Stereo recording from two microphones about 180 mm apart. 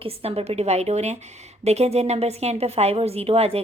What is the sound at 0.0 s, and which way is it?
A woman's voice, 35° right (ahead or behind).